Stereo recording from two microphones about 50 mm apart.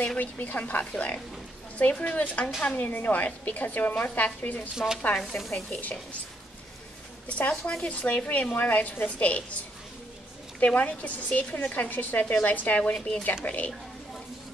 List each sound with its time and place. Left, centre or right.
0.2 s a woman's voice: left
4.7 s speech: centre
5.3 s a woman's voice: left
7.2 s speech: left
10.6 s a woman's voice: left
12.9 s speech: centre
13.2 s a woman's voice: left